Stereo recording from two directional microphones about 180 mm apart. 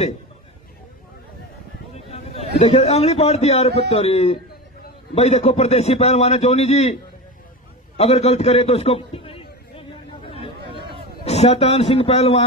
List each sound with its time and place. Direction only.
2.0 s a sound: 35° left (ahead or behind)
2.6 s a man's voice: 40° left (ahead or behind)
8.0 s a man's voice: 35° left (ahead or behind)
11.2 s a man's voice: 35° left (ahead or behind)